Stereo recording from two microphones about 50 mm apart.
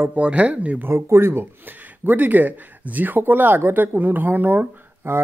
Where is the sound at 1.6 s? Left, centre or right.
Right.